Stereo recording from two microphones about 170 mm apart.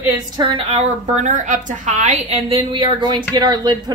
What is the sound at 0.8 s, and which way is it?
A woman's voice, 45° right (ahead or behind).